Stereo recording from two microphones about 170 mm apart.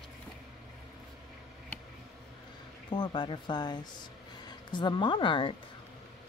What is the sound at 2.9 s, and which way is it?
Speech, 30° left (ahead or behind).